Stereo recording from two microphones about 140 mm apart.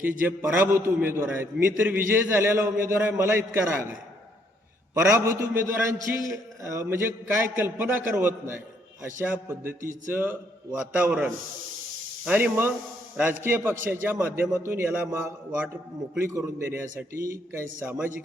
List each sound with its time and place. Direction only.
0.2 s a man's voice: 10° right (ahead or behind)
5.1 s a man's voice: 20° right (ahead or behind)